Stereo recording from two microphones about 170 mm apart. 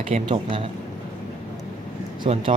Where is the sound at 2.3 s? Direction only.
35° right (ahead or behind).